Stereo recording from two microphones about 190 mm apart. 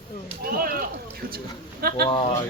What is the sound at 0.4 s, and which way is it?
Speech, 50° right (ahead or behind).